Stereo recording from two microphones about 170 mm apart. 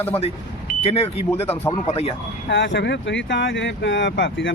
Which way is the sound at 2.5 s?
90° left.